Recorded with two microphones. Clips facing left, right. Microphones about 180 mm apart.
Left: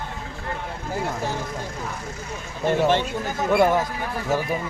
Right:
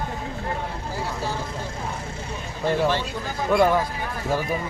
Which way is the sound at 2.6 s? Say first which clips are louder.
Left 2 dB; 20° left (ahead or behind).